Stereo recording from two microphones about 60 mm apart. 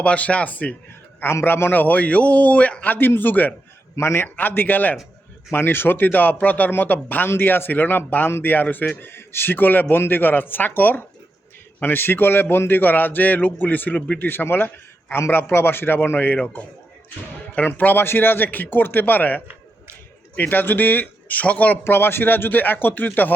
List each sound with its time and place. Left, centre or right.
0.0 s a man's voice: left
1.2 s a man's voice: left
3.9 s a man's voice: left
4.4 s speech: left
20.4 s speech: left
21.8 s speech: left